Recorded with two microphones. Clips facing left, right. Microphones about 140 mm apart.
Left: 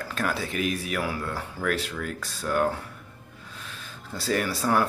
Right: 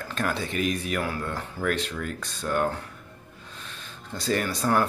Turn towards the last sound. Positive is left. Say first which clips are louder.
# even
turn(degrees=5)  # may be behind; listen again after turning